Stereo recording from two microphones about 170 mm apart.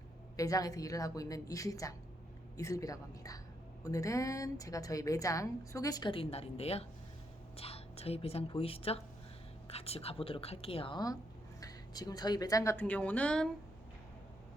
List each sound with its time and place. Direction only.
0.3 s a woman's voice: 20° left (ahead or behind)
12.8 s speech: 10° left (ahead or behind)